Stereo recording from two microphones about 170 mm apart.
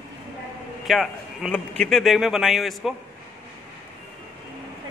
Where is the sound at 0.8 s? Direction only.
Centre (ahead or behind).